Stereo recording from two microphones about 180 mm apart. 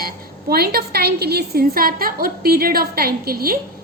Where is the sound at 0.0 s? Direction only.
55° right (ahead or behind).